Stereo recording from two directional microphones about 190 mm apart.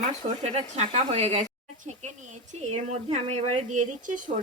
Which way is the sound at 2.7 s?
35° right (ahead or behind).